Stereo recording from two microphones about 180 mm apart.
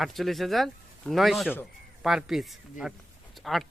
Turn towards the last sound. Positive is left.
turn(degrees=0)  # may be behind; listen again after turning